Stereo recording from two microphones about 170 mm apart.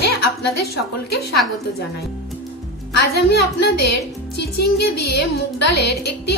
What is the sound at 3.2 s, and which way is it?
A woman's voice, 75° left (ahead or behind).